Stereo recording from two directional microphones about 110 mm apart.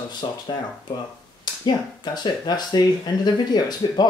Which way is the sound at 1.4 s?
40° left (ahead or behind).